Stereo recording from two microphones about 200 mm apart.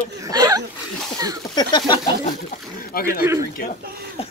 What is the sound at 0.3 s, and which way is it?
Chuckle, 20° right (ahead or behind).